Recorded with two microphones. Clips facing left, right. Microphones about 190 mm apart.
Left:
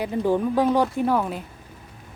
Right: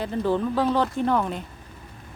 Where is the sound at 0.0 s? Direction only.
15° left (ahead or behind).